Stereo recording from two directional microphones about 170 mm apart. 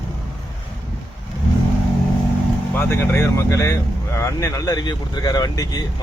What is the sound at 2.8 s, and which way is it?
Speech, 15° left (ahead or behind).